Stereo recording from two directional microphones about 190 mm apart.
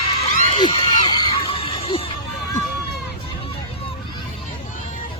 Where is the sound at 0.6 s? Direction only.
20° left (ahead or behind).